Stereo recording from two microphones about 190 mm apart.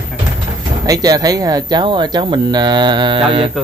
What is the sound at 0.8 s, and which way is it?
Speech, 20° right (ahead or behind).